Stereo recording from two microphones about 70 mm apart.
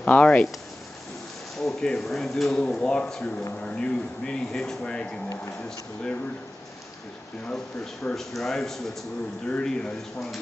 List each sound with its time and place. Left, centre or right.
0.0 s speech: centre
1.6 s speech: centre
7.4 s speech: centre